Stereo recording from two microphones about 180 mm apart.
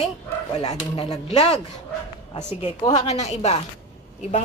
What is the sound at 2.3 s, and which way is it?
A woman's voice, 40° left (ahead or behind).